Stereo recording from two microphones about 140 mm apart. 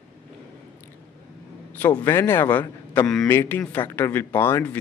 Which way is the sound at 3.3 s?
15° left (ahead or behind).